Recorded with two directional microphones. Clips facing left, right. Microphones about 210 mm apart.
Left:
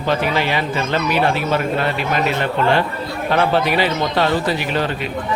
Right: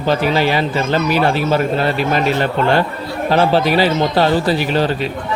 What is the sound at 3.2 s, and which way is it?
A man's voice, 35° right (ahead or behind).